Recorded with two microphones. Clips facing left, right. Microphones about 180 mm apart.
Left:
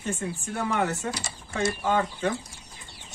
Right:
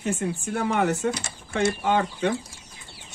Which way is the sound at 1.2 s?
60° right (ahead or behind).